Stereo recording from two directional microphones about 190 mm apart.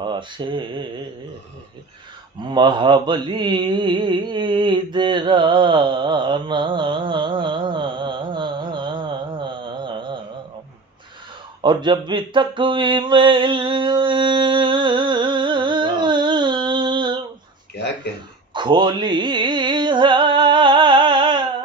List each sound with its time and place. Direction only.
0.0 s speech: 25° right (ahead or behind)
2.3 s mantra: 25° right (ahead or behind)
11.6 s mantra: 25° right (ahead or behind)
18.5 s a sound: 25° right (ahead or behind)